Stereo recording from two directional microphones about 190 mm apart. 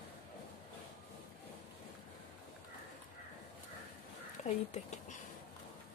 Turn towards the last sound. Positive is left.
turn(degrees=40)  # may be behind; listen again after turning